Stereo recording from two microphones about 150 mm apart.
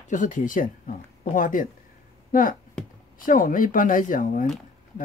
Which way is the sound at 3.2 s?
65° left (ahead or behind).